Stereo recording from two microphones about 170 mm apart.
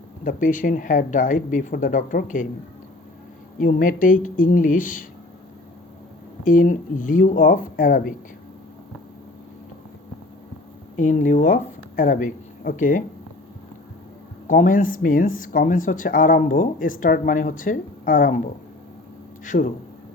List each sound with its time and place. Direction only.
0.3 s speech: 50° left (ahead or behind)
3.6 s speech: 50° left (ahead or behind)
6.4 s speech: 50° left (ahead or behind)
10.9 s speech: 45° left (ahead or behind)
14.4 s speech: 50° left (ahead or behind)
19.5 s speech: 50° left (ahead or behind)